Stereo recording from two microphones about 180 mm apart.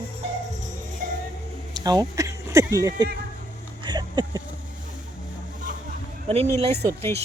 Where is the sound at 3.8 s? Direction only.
25° right (ahead or behind).